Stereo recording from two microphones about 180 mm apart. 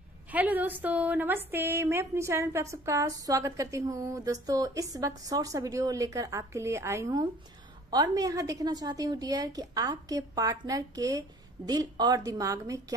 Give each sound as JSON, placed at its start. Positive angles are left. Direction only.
{"t": 0.3, "sound": "a woman's voice", "side_deg": -10}